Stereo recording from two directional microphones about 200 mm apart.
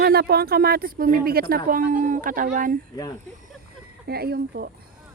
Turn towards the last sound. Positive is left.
turn(degrees=-50)  # may be behind; listen again after turning